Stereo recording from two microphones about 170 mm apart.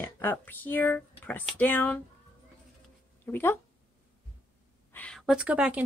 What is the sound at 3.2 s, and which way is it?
Speech, 10° left (ahead or behind).